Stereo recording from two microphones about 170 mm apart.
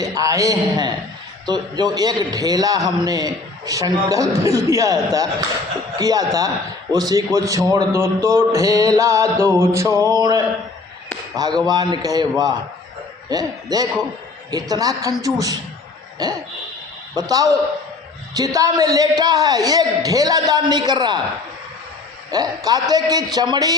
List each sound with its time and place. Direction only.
0.0 s a man's voice: 20° right (ahead or behind)
17.2 s a man's voice: 20° right (ahead or behind)
22.3 s a man's voice: 20° right (ahead or behind)